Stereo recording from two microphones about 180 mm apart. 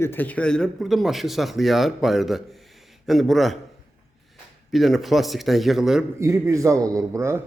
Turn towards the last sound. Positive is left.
turn(degrees=-15)  # may be behind; listen again after turning